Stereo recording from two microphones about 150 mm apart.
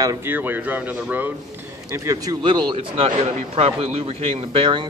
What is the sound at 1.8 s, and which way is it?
Speech, 25° right (ahead or behind).